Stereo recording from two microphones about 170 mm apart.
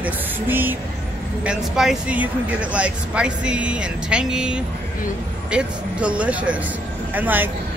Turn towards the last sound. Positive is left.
turn(degrees=-10)  # may be behind; listen again after turning